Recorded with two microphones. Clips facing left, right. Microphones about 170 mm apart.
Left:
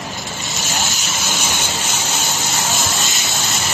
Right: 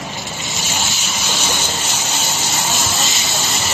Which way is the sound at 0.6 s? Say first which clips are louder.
Left 1 dB; 45° left (ahead or behind).